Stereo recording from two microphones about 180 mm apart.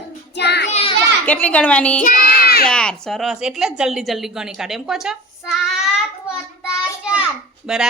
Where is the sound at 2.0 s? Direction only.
55° left (ahead or behind).